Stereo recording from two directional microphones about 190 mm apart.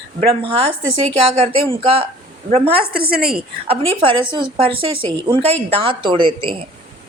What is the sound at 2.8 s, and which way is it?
Speech, 50° right (ahead or behind).